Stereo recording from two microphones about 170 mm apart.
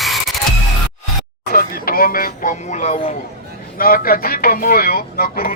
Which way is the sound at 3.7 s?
60° left (ahead or behind).